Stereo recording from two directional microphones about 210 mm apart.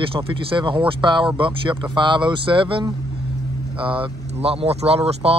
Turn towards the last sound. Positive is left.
turn(degrees=-30)  # may be behind; listen again after turning